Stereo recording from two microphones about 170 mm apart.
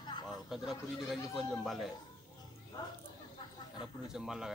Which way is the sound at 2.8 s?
20° left (ahead or behind).